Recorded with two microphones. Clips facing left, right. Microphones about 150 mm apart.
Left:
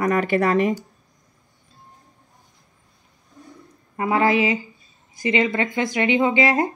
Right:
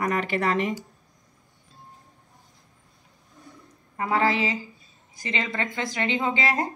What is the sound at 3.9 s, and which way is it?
Speech, 20° left (ahead or behind).